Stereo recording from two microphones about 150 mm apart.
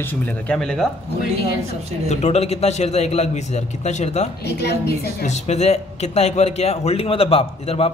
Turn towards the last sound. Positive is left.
turn(degrees=40)  # may be behind; listen again after turning